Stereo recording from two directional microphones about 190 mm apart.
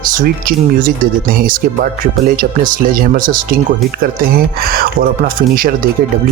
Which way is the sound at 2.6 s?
45° right (ahead or behind).